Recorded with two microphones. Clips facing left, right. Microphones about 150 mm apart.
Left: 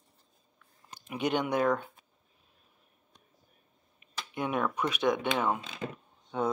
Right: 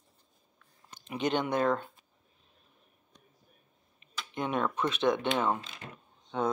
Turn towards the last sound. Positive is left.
turn(degrees=5)  # may be behind; listen again after turning